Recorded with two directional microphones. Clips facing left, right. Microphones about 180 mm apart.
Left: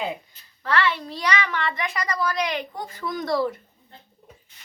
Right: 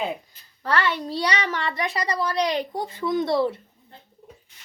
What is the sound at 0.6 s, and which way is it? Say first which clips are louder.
A child's voice: even; 40° right (ahead or behind).